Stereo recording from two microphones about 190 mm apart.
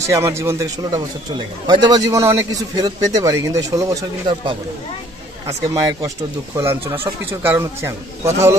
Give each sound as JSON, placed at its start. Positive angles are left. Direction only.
{"t": 0.0, "sound": "a man's voice", "side_deg": -15}
{"t": 5.5, "sound": "a man's voice", "side_deg": -15}